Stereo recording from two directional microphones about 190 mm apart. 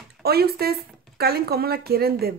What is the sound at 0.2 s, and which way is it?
Speech, 55° right (ahead or behind).